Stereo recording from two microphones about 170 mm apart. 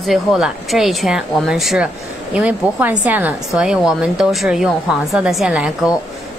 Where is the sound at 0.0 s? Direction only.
Centre (ahead or behind).